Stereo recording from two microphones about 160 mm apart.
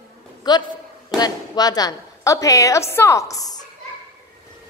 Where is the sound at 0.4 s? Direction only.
25° left (ahead or behind).